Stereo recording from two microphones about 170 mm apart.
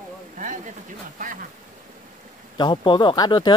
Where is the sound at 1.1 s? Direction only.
50° right (ahead or behind).